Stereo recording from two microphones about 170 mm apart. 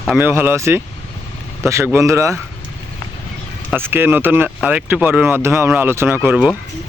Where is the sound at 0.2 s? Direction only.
10° right (ahead or behind).